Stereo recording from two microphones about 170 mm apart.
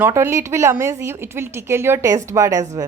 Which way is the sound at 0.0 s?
15° right (ahead or behind).